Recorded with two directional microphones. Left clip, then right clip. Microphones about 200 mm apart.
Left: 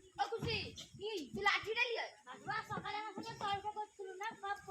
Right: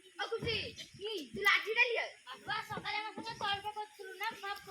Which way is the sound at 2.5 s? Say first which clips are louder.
Right 3 dB; 40° left (ahead or behind).